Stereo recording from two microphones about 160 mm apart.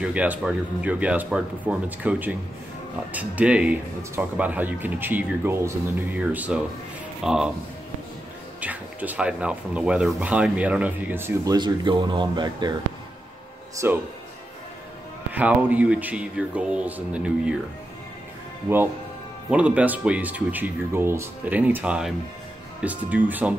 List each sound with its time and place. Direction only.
0.0 s speech: 10° right (ahead or behind)
8.5 s speech: 10° right (ahead or behind)
11.5 s speech: 30° right (ahead or behind)
13.7 s speech: 15° right (ahead or behind)
15.3 s speech: 10° right (ahead or behind)
19.5 s speech: 10° right (ahead or behind)